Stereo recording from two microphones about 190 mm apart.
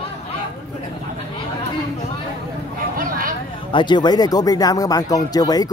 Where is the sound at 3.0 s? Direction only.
50° right (ahead or behind).